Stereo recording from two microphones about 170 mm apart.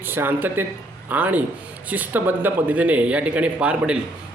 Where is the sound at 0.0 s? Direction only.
10° right (ahead or behind).